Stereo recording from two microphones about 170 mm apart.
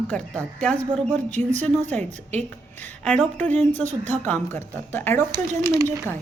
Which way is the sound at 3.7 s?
45° right (ahead or behind).